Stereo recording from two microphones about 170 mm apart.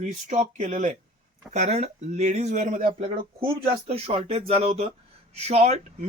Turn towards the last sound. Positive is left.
turn(degrees=-40)  # may be behind; listen again after turning